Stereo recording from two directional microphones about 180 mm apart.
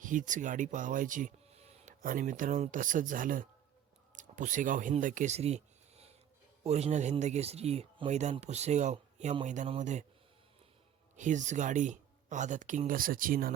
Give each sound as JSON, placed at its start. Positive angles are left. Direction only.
{"t": 0.0, "sound": "speech", "side_deg": -45}
{"t": 11.2, "sound": "speech", "side_deg": -45}